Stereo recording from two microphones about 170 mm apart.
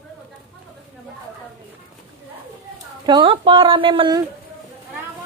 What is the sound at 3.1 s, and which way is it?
Speech, 30° right (ahead or behind).